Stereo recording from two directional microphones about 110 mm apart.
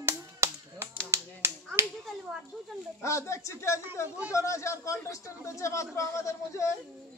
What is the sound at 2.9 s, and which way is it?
A man's voice, 25° left (ahead or behind).